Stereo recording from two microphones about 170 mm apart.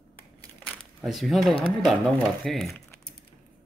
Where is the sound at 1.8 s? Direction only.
Centre (ahead or behind).